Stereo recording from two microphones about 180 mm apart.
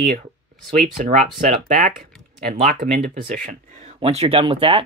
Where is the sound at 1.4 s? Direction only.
45° right (ahead or behind).